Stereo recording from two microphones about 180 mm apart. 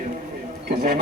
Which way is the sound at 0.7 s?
55° right (ahead or behind).